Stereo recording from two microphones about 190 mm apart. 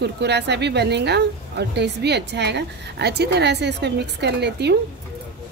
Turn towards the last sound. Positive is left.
turn(degrees=-65)  # may be behind; listen again after turning